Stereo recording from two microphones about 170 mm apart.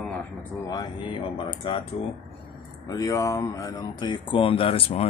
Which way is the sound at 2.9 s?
20° left (ahead or behind).